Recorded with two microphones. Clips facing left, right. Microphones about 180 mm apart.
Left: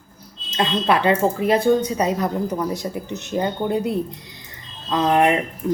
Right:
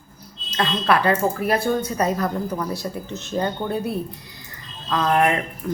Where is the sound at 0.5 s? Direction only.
20° left (ahead or behind).